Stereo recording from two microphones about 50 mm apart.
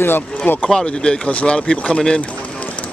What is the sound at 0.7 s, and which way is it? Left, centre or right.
Speech, centre.